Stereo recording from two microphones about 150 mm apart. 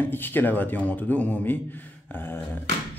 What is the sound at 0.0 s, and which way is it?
A man's voice, 15° left (ahead or behind).